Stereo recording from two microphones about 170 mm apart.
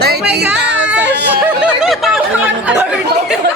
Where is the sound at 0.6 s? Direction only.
90° right.